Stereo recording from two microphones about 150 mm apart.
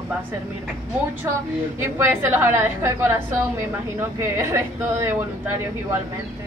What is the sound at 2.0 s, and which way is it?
A woman's voice, 15° right (ahead or behind).